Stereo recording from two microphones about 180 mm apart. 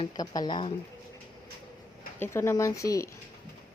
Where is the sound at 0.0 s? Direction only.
25° left (ahead or behind).